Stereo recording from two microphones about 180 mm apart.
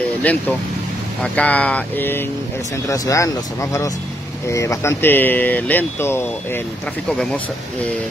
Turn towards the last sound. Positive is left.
turn(degrees=0)  # may be behind; listen again after turning